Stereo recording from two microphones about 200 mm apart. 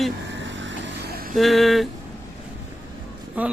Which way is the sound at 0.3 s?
65° right (ahead or behind).